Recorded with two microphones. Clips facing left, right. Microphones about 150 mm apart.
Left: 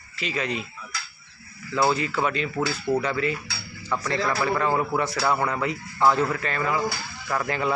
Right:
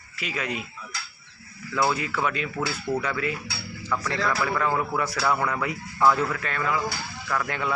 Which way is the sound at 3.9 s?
20° left (ahead or behind).